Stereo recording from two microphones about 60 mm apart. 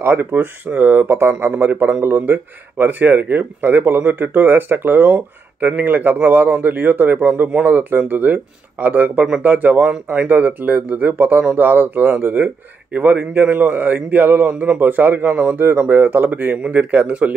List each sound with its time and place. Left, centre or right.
0.0 s a man's voice: right